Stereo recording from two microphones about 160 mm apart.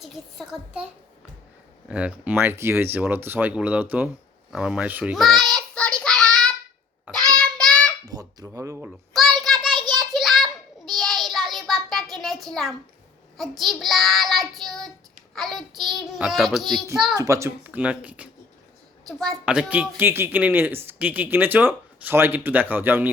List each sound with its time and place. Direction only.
0.0 s child singing: centre (ahead or behind)
1.9 s a woman's voice: 5° right (ahead or behind)
5.1 s child singing: centre (ahead or behind)
8.0 s a sound: 25° right (ahead or behind)
8.4 s speech: 20° right (ahead or behind)
9.4 s child singing: centre (ahead or behind)
17.2 s a woman's voice: 20° right (ahead or behind)